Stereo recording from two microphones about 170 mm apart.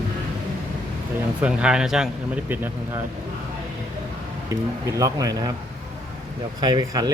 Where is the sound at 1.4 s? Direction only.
5° right (ahead or behind).